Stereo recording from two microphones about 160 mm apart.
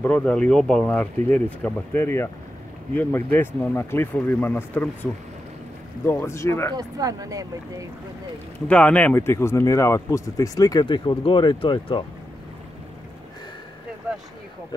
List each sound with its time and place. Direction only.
0.0 s speech: 5° left (ahead or behind)
6.0 s speech: 15° left (ahead or behind)
6.8 s speech: 20° right (ahead or behind)
8.6 s speech: 10° left (ahead or behind); by 12.0 s 30° left (ahead or behind)